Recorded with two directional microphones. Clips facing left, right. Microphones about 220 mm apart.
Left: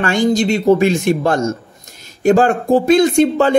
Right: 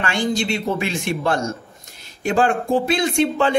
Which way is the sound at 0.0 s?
40° left (ahead or behind).